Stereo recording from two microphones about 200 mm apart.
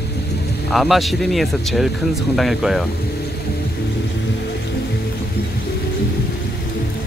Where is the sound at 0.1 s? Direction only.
55° left (ahead or behind).